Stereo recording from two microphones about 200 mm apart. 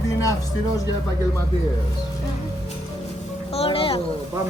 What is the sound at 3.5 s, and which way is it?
Music, 30° left (ahead or behind).